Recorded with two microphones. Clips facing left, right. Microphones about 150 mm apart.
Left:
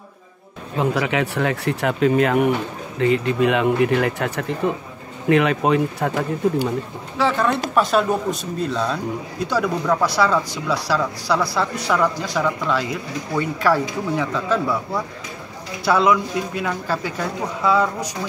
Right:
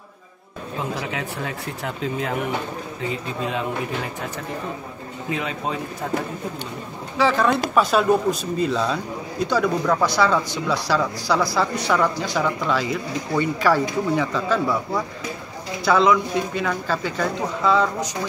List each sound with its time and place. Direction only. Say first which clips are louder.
0.7 s speech: left 8 dB; 75° left (ahead or behind)
7.2 s speech: right 1 dB; centre (ahead or behind)